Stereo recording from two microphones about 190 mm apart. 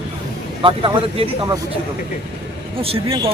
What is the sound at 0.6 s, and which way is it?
Speech, 30° right (ahead or behind).